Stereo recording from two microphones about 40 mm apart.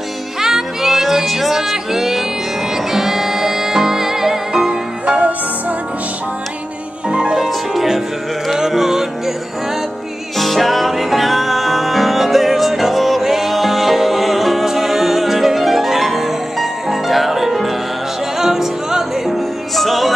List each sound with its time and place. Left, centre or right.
0.4 s music: centre
5.0 s music: right
7.1 s music: right
7.3 s music: centre
10.3 s music: centre